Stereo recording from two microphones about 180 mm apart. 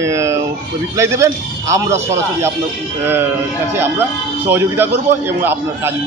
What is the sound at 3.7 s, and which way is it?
A man's voice, 15° right (ahead or behind).